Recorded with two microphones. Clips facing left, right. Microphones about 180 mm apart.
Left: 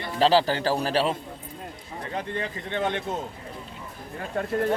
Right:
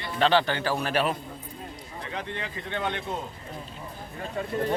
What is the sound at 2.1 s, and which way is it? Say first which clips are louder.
Speech: left 4 dB; 45° left (ahead or behind).